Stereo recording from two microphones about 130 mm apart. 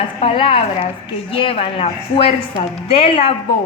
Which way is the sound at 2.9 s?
45° left (ahead or behind).